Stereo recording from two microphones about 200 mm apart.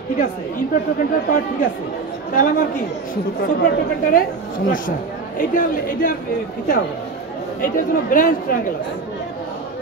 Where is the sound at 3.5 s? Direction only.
50° left (ahead or behind).